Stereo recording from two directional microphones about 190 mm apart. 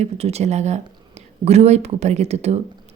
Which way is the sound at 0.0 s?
35° right (ahead or behind).